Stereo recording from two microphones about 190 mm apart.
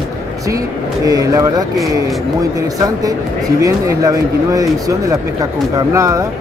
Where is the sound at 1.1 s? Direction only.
20° right (ahead or behind).